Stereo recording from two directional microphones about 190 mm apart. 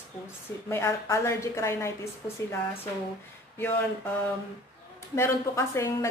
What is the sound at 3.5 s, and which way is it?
A woman's voice, 10° left (ahead or behind).